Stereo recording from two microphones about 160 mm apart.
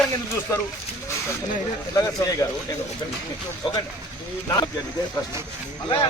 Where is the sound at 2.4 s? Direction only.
15° left (ahead or behind).